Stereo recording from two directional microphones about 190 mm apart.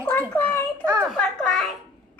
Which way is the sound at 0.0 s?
10° left (ahead or behind).